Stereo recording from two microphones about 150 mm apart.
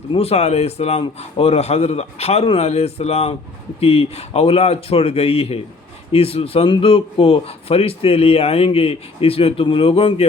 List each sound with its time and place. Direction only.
0.1 s a man's voice: 40° left (ahead or behind)